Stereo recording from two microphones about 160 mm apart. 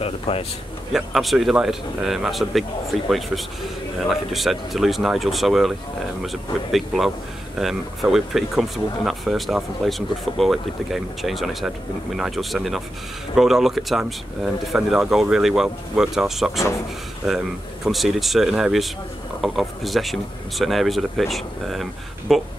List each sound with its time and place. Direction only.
0.0 s speech: 35° left (ahead or behind)
0.9 s speech: centre (ahead or behind)